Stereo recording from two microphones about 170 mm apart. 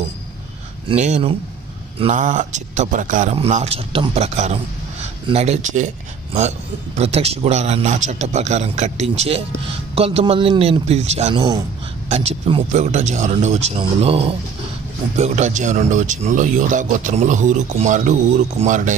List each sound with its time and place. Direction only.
0.8 s a man's voice: 40° right (ahead or behind)
3.3 s a man's voice: 35° right (ahead or behind)
7.0 s a man's voice: 35° right (ahead or behind)